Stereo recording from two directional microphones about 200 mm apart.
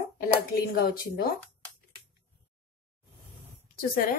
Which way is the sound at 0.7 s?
50° left (ahead or behind).